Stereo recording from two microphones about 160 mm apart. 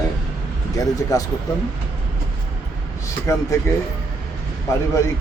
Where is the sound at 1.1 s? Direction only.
20° left (ahead or behind).